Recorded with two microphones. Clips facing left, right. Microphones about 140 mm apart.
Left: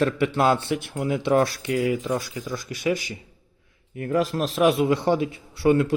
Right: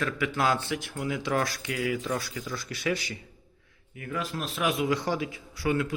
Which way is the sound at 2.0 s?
15° left (ahead or behind).